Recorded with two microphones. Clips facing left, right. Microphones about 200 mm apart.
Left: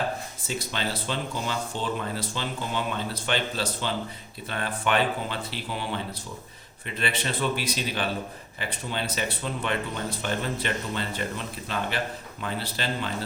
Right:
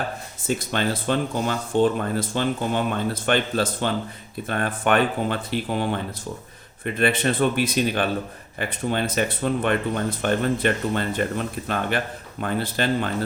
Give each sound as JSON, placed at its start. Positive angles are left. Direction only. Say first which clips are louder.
{"t": 0.4, "sound": "speech", "louder": "right 8 dB", "side_deg": -50}